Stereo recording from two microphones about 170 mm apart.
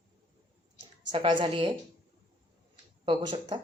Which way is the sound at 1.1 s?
30° right (ahead or behind).